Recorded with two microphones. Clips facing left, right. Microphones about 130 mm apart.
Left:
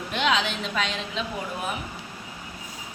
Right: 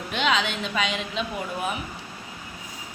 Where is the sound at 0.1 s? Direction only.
Centre (ahead or behind).